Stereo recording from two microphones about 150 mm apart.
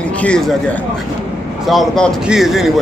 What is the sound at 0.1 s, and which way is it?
Speech, 5° left (ahead or behind).